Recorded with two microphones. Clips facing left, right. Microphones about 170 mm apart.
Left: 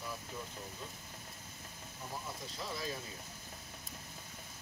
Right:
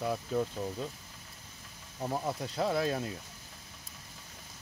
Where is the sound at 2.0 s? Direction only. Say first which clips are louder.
Right 11 dB; 70° right (ahead or behind).